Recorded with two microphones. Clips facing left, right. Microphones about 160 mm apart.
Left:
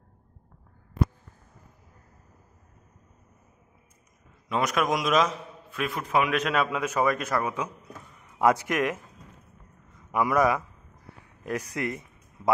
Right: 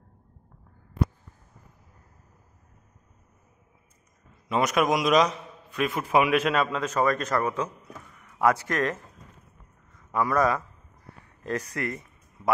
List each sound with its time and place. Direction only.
4.5 s a man's voice: centre (ahead or behind)
10.1 s a man's voice: 15° left (ahead or behind)